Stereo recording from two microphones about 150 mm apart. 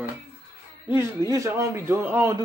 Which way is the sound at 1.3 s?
20° right (ahead or behind).